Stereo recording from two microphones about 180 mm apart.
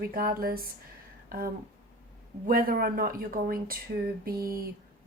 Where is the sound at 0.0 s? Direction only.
55° right (ahead or behind).